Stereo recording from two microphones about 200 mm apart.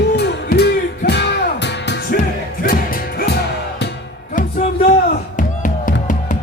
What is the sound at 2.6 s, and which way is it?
Music, 45° left (ahead or behind).